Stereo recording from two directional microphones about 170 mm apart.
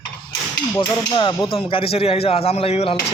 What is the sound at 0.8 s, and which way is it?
Speech, 30° left (ahead or behind).